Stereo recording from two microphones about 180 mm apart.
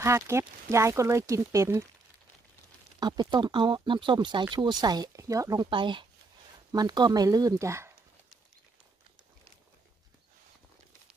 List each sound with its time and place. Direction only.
0.0 s speech: 15° right (ahead or behind)
3.0 s speech: 25° right (ahead or behind)